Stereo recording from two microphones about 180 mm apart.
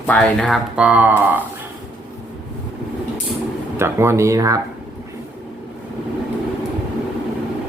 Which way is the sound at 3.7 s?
15° right (ahead or behind).